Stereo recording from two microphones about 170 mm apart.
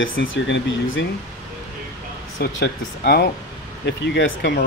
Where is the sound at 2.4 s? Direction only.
70° left (ahead or behind).